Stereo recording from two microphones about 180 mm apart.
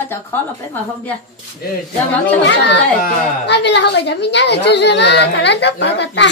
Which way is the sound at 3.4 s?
70° left (ahead or behind).